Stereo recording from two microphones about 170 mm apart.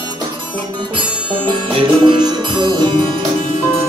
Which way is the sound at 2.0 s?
25° right (ahead or behind).